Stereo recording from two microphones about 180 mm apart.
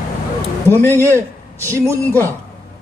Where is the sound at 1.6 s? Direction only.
15° right (ahead or behind).